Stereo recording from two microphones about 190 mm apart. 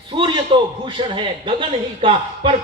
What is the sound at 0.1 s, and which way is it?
A man's voice, 25° right (ahead or behind).